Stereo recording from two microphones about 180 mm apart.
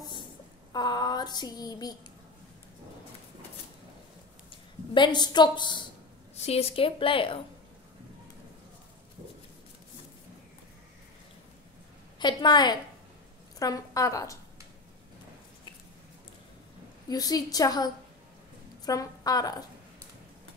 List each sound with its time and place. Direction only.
0.7 s a sound: 25° left (ahead or behind)
4.9 s a woman's voice: 25° left (ahead or behind)
6.3 s a woman's voice: 35° left (ahead or behind)
12.2 s a woman's voice: 25° left (ahead or behind)
17.1 s a woman's voice: 20° left (ahead or behind)